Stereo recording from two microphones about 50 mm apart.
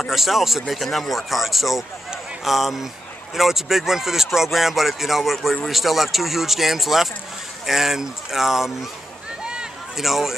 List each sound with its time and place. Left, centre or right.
0.0 s speech: centre
9.4 s a sound: centre
9.9 s speech: centre